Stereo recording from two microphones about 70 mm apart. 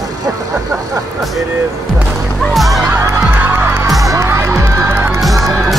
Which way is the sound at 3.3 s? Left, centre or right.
Right.